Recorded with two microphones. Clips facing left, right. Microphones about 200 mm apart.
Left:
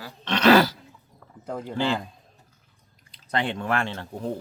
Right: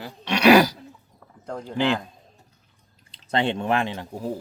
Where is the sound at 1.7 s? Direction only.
15° right (ahead or behind).